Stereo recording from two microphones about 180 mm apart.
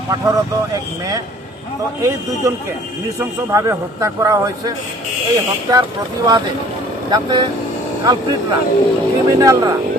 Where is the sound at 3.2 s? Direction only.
15° right (ahead or behind).